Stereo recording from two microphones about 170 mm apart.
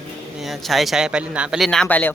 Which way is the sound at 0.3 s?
Centre (ahead or behind).